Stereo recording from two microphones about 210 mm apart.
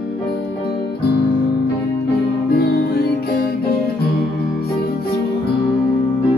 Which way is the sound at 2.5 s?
50° left (ahead or behind).